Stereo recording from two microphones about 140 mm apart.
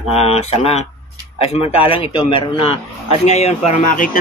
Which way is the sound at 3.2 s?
50° left (ahead or behind).